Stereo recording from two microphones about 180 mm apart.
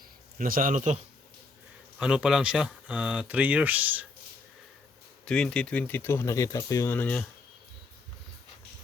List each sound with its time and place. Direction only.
0.3 s a man's voice: 50° right (ahead or behind)
2.0 s speech: 5° right (ahead or behind)
5.2 s speech: 5° left (ahead or behind)